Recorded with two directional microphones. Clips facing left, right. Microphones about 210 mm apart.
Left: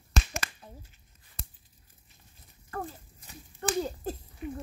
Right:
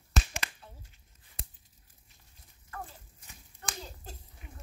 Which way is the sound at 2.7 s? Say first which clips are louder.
Left 7 dB; 40° left (ahead or behind).